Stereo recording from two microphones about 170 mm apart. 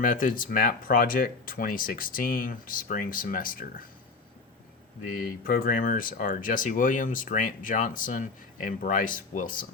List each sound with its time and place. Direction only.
0.0 s speech: 55° left (ahead or behind)
5.0 s speech: 55° left (ahead or behind)